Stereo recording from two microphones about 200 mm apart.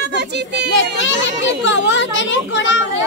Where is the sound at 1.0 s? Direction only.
65° left (ahead or behind).